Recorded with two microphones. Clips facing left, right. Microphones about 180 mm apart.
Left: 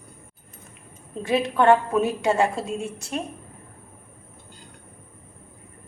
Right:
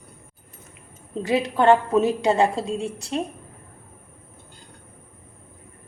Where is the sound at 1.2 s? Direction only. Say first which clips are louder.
Even; 30° right (ahead or behind).